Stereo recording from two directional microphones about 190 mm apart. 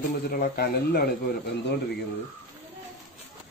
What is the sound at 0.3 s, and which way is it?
Speech, 55° left (ahead or behind).